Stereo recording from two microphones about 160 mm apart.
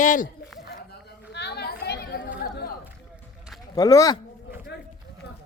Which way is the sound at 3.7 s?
20° left (ahead or behind).